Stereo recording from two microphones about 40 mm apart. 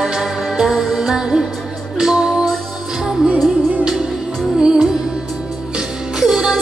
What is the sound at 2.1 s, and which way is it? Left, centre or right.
Music, right.